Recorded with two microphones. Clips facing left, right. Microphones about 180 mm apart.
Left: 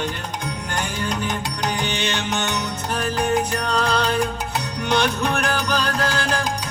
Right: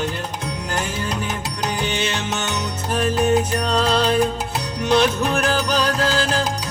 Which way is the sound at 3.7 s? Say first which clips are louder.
Right 3 dB; 30° right (ahead or behind).